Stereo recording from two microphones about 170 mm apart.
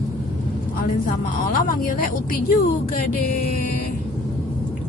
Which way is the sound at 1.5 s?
55° left (ahead or behind).